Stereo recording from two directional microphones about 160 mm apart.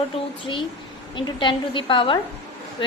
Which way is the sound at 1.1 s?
30° left (ahead or behind).